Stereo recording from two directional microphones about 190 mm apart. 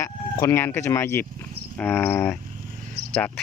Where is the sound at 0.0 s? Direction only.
15° left (ahead or behind).